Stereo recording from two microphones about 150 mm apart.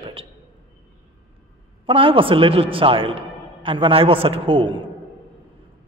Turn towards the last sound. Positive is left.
turn(degrees=-35)  # may be behind; listen again after turning